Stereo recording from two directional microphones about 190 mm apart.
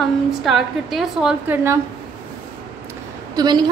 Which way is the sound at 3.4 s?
20° right (ahead or behind).